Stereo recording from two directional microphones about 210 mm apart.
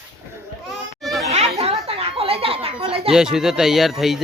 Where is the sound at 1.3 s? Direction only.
30° right (ahead or behind).